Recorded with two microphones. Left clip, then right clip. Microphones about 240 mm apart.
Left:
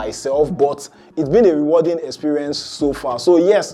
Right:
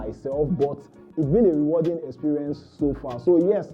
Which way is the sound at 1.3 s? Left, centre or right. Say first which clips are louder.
Left 7 dB; centre.